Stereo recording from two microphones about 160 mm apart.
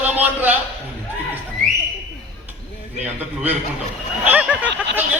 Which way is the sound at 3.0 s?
5° right (ahead or behind).